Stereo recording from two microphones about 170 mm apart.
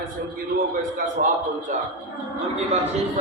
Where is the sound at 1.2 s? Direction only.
55° right (ahead or behind).